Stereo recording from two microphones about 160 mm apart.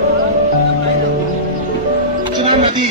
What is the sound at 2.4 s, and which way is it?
Music, 30° right (ahead or behind).